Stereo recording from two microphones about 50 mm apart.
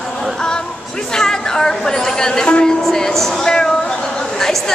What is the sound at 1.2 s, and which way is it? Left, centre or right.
A woman's voice, centre.